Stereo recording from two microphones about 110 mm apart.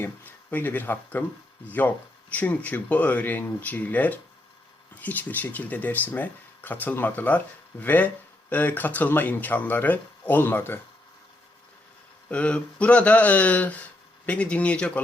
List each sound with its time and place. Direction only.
0.0 s speech: 15° left (ahead or behind)
2.3 s speech: 15° left (ahead or behind)
12.3 s speech: 10° left (ahead or behind)